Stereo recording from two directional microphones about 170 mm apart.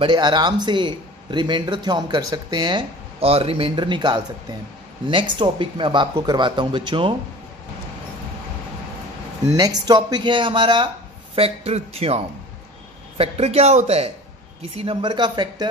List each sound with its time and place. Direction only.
0.0 s speech: 25° right (ahead or behind)
9.5 s speech: 20° right (ahead or behind); by 12.2 s 35° right (ahead or behind)
13.2 s speech: 40° right (ahead or behind)